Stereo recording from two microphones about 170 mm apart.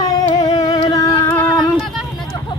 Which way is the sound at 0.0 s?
20° left (ahead or behind).